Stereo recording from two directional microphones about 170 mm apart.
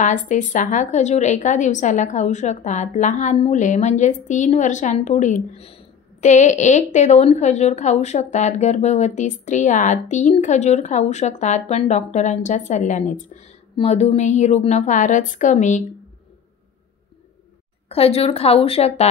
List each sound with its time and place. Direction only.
0.0 s a woman's voice: 45° left (ahead or behind)
17.8 s a woman's voice: 35° left (ahead or behind)